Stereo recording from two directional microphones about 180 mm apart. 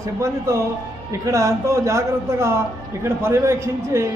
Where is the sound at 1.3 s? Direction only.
15° right (ahead or behind).